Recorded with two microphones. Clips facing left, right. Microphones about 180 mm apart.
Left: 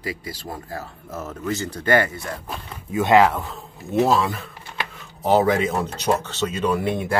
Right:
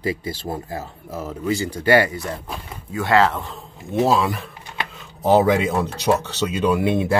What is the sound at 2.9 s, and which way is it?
Speech, 20° left (ahead or behind).